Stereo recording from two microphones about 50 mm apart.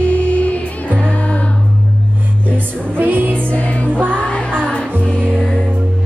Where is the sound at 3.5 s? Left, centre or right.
Left.